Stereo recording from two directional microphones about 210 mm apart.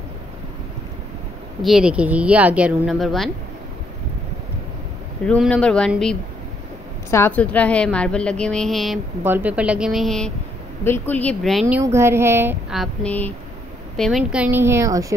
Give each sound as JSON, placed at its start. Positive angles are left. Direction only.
{"t": 1.6, "sound": "a woman's voice", "side_deg": 0}
{"t": 5.2, "sound": "a woman's voice", "side_deg": 5}
{"t": 11.6, "sound": "speech", "side_deg": -15}